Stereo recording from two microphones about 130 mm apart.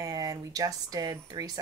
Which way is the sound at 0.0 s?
25° right (ahead or behind).